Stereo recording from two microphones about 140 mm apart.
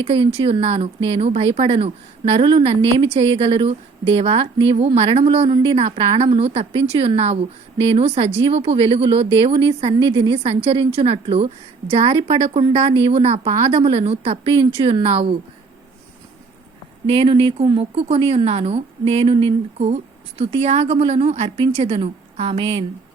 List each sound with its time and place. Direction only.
0.0 s speech: 40° right (ahead or behind)
17.1 s a woman's voice: 40° right (ahead or behind)